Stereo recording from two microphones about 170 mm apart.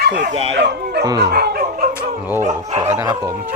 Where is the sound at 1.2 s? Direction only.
75° right (ahead or behind).